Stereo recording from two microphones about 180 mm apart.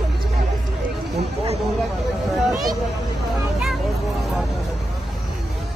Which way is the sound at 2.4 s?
Centre (ahead or behind).